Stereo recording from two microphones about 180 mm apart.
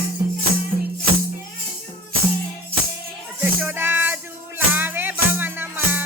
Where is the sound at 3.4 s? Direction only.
10° right (ahead or behind).